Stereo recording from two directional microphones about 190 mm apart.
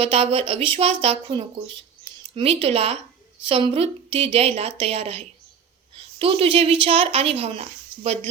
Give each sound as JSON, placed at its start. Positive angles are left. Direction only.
{"t": 0.0, "sound": "speech", "side_deg": -30}